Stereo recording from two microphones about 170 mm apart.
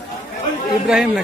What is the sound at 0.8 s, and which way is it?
Speech, 5° right (ahead or behind).